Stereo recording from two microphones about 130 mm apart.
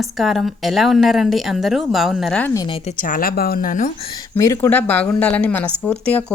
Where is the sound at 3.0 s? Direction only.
90° left.